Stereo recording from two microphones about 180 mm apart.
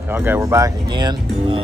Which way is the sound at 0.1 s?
10° right (ahead or behind).